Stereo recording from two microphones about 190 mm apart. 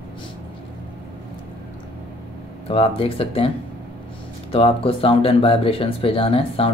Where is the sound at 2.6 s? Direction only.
30° left (ahead or behind).